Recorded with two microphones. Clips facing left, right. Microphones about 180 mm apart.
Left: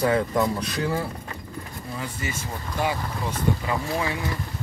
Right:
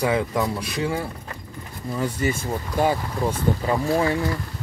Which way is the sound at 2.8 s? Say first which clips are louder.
Right 5 dB; 40° right (ahead or behind).